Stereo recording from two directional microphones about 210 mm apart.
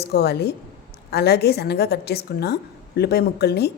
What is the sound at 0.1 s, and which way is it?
A woman's voice, 50° left (ahead or behind).